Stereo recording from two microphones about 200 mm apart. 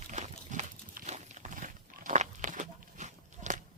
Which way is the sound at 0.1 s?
40° right (ahead or behind).